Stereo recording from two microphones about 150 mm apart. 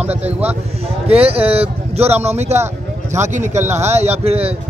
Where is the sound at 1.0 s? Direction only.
40° right (ahead or behind).